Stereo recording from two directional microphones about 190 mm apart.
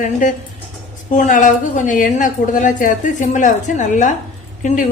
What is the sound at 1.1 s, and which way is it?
A woman's voice, 40° left (ahead or behind).